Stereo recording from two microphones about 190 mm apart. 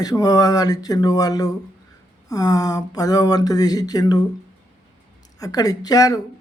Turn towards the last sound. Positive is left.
turn(degrees=20)  # may be behind; listen again after turning